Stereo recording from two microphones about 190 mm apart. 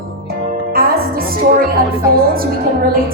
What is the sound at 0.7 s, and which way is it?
Music, 50° right (ahead or behind).